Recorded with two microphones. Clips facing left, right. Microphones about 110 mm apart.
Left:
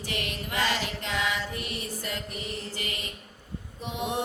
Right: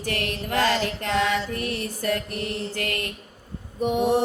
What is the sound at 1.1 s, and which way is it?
Music, 50° right (ahead or behind).